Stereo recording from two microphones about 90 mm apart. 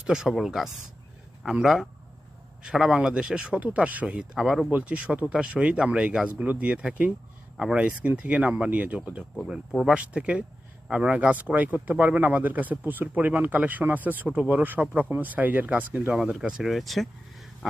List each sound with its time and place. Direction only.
0.0 s speech: 5° right (ahead or behind)
4.4 s speech: centre (ahead or behind)
4.7 s speech: 15° right (ahead or behind)
16.1 s speech: 5° right (ahead or behind)
17.6 s a sound: centre (ahead or behind)